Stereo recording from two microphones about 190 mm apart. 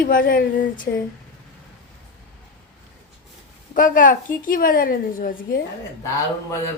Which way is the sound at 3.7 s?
45° left (ahead or behind).